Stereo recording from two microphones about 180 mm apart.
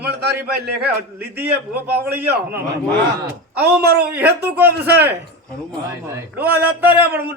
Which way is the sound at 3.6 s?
60° right (ahead or behind).